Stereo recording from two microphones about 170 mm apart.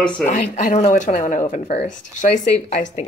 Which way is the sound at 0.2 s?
50° left (ahead or behind).